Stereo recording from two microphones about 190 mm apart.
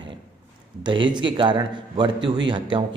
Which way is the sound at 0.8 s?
25° right (ahead or behind).